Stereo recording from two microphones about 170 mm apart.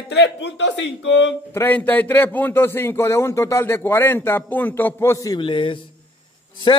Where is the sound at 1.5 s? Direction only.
10° left (ahead or behind).